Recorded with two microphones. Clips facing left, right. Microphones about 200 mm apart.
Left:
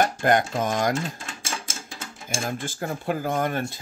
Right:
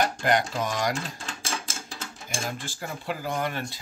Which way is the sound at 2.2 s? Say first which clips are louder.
Left 4 dB; 50° left (ahead or behind).